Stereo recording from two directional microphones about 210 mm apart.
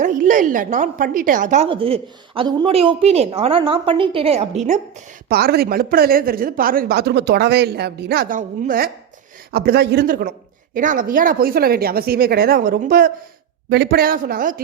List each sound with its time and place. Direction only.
0.0 s a woman's voice: 35° right (ahead or behind)